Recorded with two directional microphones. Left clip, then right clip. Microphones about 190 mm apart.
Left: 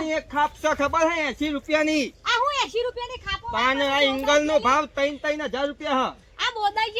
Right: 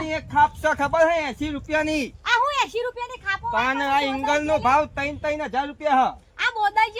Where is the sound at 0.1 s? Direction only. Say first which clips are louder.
Right 6 dB; 40° right (ahead or behind).